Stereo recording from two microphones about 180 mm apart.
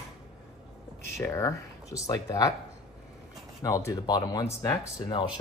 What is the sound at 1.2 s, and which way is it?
Speech, 15° left (ahead or behind).